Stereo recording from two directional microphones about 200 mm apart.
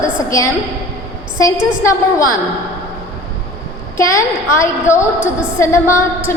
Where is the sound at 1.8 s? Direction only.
15° left (ahead or behind).